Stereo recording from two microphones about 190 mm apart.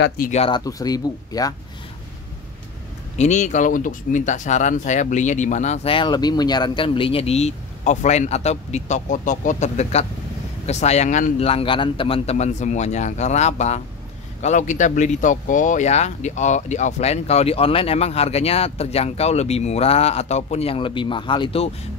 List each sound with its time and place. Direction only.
0.3 s speech: 30° left (ahead or behind)
3.2 s speech: 40° left (ahead or behind)